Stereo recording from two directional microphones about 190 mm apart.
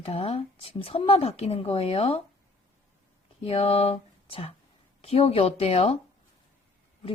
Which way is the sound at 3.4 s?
30° left (ahead or behind).